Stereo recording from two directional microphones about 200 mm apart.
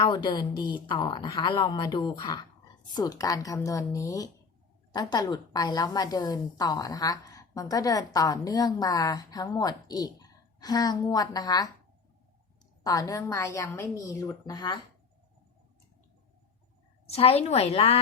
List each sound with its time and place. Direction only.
0.0 s a woman's voice: 20° left (ahead or behind)
12.8 s a woman's voice: 20° left (ahead or behind)
17.1 s a woman's voice: 30° left (ahead or behind)